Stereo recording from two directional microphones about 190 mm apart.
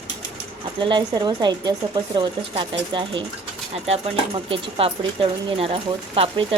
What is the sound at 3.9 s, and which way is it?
Speech, 30° right (ahead or behind).